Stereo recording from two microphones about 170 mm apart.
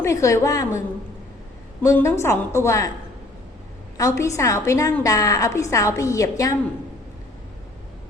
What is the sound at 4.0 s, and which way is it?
A woman's voice, 20° left (ahead or behind).